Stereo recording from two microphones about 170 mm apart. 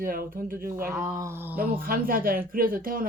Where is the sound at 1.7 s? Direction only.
60° right (ahead or behind).